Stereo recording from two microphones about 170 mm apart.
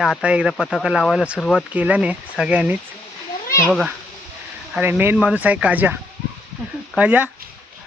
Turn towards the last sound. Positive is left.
turn(degrees=-10)  # may be behind; listen again after turning